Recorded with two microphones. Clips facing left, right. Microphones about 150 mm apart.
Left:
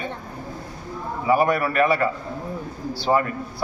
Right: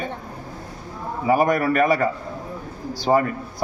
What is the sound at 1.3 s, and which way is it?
A man's voice, 45° right (ahead or behind).